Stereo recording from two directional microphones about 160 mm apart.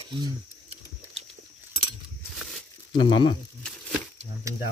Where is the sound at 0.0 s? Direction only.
35° right (ahead or behind).